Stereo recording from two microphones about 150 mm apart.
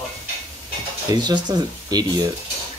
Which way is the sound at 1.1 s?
30° right (ahead or behind).